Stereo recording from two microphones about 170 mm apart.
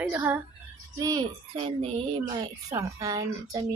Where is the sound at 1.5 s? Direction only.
35° right (ahead or behind).